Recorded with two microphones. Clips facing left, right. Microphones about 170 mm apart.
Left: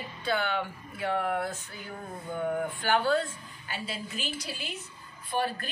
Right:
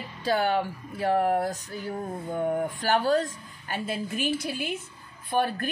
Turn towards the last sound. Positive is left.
turn(degrees=-50)  # may be behind; listen again after turning